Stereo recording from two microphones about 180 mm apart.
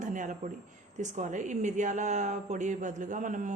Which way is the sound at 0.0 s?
45° right (ahead or behind).